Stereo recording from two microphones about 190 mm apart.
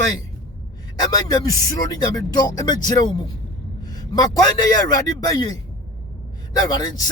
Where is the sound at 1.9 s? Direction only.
20° left (ahead or behind).